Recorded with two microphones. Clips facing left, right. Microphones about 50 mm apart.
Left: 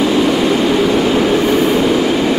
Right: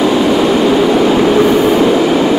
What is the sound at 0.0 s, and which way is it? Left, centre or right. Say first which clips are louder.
Vehicle: right 2 dB; centre.